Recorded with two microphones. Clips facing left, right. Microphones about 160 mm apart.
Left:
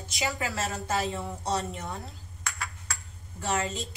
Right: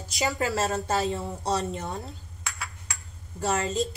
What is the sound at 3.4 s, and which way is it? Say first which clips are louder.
Speech: right 4 dB; 40° right (ahead or behind).